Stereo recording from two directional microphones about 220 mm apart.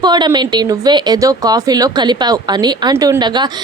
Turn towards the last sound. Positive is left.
turn(degrees=-20)  # may be behind; listen again after turning